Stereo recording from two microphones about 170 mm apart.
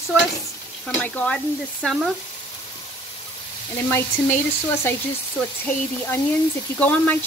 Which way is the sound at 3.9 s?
15° left (ahead or behind).